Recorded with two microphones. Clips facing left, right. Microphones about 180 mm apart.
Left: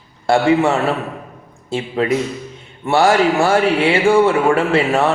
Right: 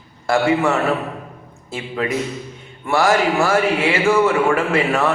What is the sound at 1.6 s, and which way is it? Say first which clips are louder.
A man's voice: left 5 dB; 30° left (ahead or behind).